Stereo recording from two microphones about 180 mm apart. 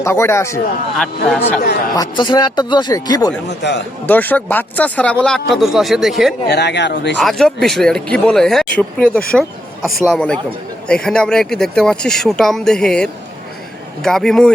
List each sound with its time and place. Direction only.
0.0 s speech: 15° left (ahead or behind)
0.9 s speech: 5° left (ahead or behind)
1.9 s speech: 25° left (ahead or behind)
3.6 s speech: 75° left (ahead or behind)
4.0 s speech: 10° left (ahead or behind)
6.5 s speech: 70° left (ahead or behind)
7.2 s speech: centre (ahead or behind)